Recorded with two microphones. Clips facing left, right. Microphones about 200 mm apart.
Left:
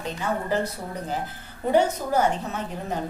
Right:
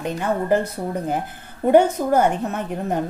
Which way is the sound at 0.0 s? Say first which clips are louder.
Right 5 dB; 55° right (ahead or behind).